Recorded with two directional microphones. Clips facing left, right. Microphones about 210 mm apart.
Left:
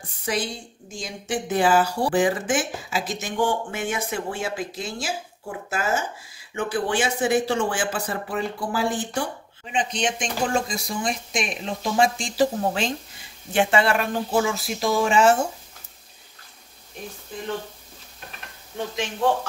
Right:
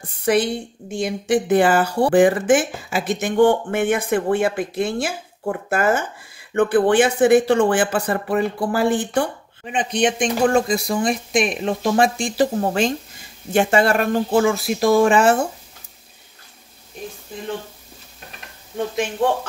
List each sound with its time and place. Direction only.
0.2 s speech: 60° right (ahead or behind)